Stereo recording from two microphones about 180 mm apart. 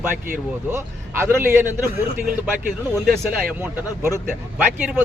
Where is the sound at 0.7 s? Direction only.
15° right (ahead or behind).